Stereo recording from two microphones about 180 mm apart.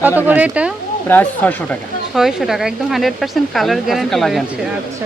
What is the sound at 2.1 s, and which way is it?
Speech, centre (ahead or behind).